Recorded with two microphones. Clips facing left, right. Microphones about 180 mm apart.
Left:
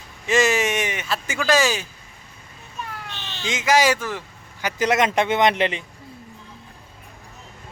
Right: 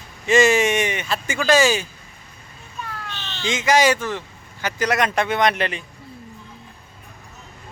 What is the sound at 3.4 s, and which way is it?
Speech, 5° left (ahead or behind).